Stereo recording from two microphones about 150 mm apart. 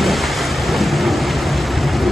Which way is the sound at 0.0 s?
Centre (ahead or behind).